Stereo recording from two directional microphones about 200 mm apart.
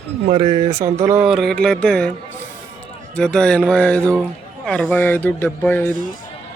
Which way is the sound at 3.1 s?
5° left (ahead or behind).